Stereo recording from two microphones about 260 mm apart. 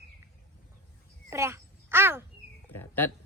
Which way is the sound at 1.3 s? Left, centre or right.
Centre.